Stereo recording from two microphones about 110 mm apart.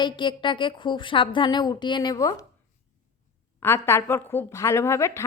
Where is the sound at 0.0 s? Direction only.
45° left (ahead or behind).